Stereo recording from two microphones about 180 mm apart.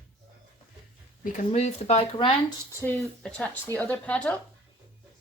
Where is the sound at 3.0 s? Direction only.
5° left (ahead or behind).